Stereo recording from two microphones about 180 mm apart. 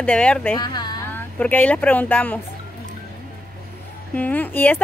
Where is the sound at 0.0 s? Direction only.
5° left (ahead or behind).